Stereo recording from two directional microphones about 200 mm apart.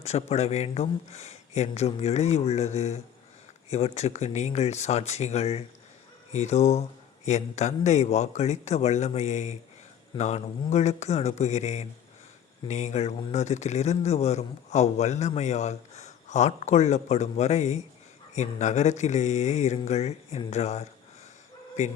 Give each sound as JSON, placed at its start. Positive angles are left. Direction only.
{"t": 0.0, "sound": "a man's voice", "side_deg": 30}